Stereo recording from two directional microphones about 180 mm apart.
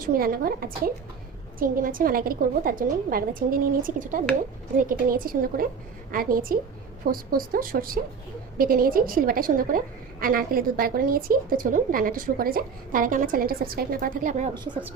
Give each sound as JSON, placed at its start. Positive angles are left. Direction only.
{"t": 0.0, "sound": "a woman's voice", "side_deg": -50}
{"t": 14.5, "sound": "a woman's voice", "side_deg": -25}